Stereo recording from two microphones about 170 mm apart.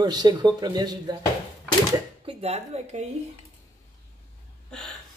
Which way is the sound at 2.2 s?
40° right (ahead or behind).